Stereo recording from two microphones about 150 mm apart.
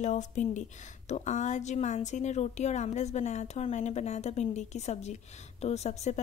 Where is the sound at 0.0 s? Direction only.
50° left (ahead or behind).